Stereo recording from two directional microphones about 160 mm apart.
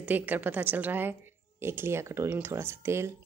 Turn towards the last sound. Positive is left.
turn(degrees=-15)  # may be behind; listen again after turning